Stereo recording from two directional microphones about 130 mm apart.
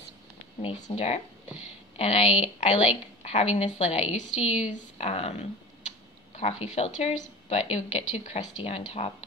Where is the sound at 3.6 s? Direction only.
60° left (ahead or behind).